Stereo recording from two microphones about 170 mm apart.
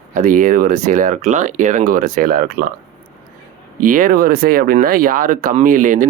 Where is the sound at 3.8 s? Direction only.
55° right (ahead or behind).